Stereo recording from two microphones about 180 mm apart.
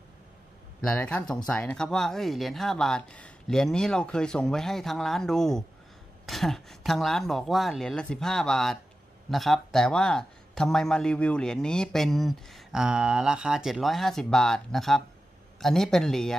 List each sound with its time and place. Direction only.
0.8 s a man's voice: 10° left (ahead or behind)